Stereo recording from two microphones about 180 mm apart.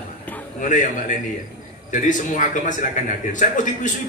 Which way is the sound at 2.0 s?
45° left (ahead or behind).